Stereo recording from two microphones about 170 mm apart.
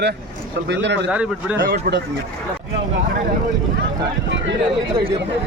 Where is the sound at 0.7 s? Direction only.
90° right.